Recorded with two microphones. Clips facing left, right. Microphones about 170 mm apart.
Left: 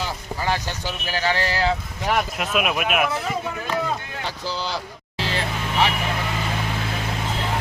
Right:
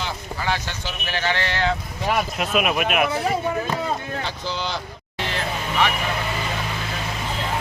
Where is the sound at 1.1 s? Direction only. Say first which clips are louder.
Left 1 dB; 40° left (ahead or behind).